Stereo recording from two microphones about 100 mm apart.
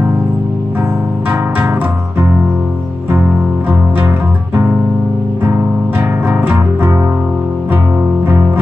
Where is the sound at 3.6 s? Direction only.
20° right (ahead or behind).